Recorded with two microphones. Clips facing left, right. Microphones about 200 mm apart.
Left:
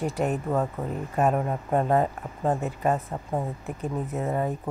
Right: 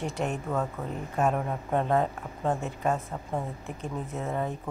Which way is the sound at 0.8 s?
15° left (ahead or behind).